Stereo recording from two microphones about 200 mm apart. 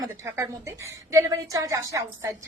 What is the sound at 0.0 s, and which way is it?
A woman's voice, 15° right (ahead or behind).